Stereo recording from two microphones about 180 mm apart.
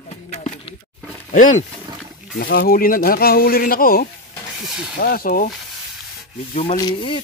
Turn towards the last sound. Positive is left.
turn(degrees=30)  # may be behind; listen again after turning